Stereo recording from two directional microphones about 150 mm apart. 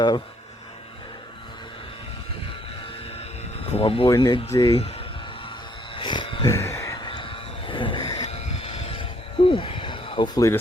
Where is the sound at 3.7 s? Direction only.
40° left (ahead or behind).